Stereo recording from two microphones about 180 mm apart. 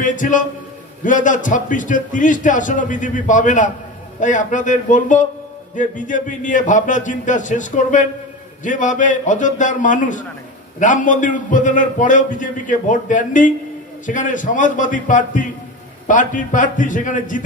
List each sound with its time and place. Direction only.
0.0 s a man's voice: 45° left (ahead or behind)